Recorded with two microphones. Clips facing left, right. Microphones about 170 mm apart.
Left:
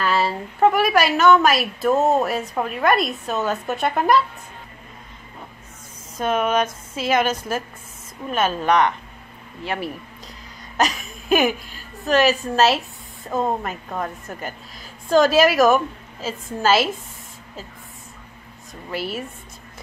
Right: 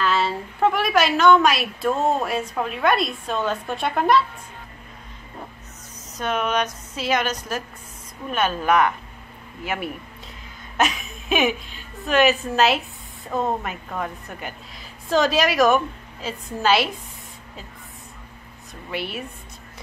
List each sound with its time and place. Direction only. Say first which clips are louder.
0.0 s a woman's voice: left 1 dB; 5° left (ahead or behind)
6.1 s speech: left 3 dB; 5° left (ahead or behind)
7.3 s speech: left 3 dB; 50° left (ahead or behind)
8.3 s a woman's voice: left 1 dB; centre (ahead or behind)
10.8 s a woman's voice: left 1 dB; centre (ahead or behind)
18.9 s a woman's voice: left 2 dB; centre (ahead or behind)